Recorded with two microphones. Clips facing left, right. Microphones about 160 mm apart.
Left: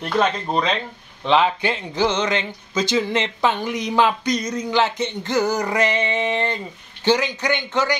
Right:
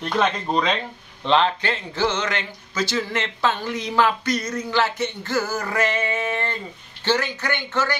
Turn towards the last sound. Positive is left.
turn(degrees=15)  # may be behind; listen again after turning